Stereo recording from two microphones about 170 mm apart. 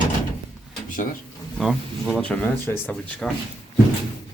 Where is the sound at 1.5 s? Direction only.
Centre (ahead or behind).